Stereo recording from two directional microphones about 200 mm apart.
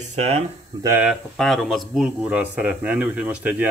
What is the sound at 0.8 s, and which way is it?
Speech, 10° right (ahead or behind).